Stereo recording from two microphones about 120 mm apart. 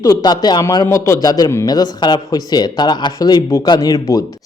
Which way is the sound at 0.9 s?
20° left (ahead or behind).